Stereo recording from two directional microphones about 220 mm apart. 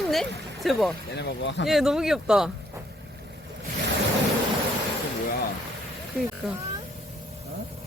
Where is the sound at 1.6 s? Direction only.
Centre (ahead or behind).